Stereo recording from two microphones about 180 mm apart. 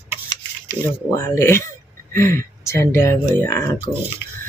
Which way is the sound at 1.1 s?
15° left (ahead or behind).